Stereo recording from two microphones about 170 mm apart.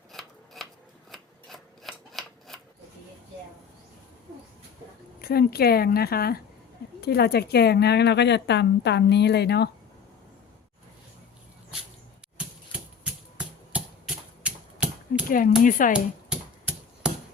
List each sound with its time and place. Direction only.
0.1 s scissors: centre (ahead or behind)
5.2 s speech: 65° left (ahead or behind)
12.7 s a sound: 5° right (ahead or behind)
14.4 s typewriter: 5° right (ahead or behind)
15.3 s speech: 55° left (ahead or behind)
16.3 s a sound: 5° right (ahead or behind)